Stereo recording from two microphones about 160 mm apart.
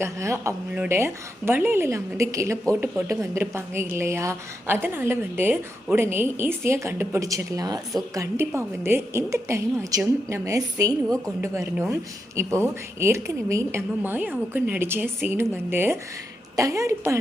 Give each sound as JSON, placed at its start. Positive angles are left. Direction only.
{"t": 0.0, "sound": "a woman's voice", "side_deg": -15}
{"t": 13.0, "sound": "a woman's voice", "side_deg": -15}